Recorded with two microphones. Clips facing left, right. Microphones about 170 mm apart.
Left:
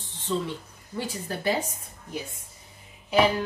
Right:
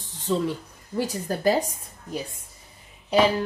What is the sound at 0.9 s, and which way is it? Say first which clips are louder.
Speech: right 5 dB; 40° right (ahead or behind).